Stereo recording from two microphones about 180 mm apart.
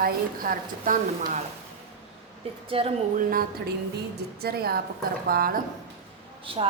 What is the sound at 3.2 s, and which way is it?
A woman's voice, 50° right (ahead or behind).